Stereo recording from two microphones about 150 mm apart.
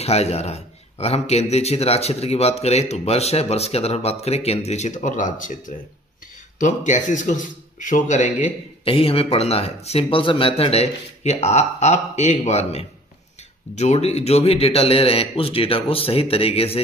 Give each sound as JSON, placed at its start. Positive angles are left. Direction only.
{"t": 0.0, "sound": "a man's voice", "side_deg": 45}
{"t": 6.6, "sound": "speech", "side_deg": 55}
{"t": 8.8, "sound": "a man's voice", "side_deg": 40}